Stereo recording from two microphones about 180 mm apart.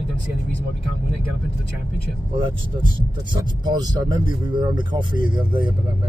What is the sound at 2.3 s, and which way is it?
Speech, 30° right (ahead or behind).